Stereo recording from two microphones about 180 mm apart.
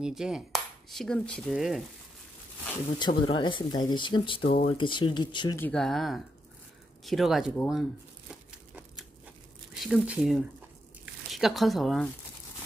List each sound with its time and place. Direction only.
0.0 s speech: 5° right (ahead or behind)
3.0 s speech: 25° left (ahead or behind)
5.6 s speech: 5° left (ahead or behind)
8.3 s crumpling: 5° right (ahead or behind)
9.8 s speech: centre (ahead or behind)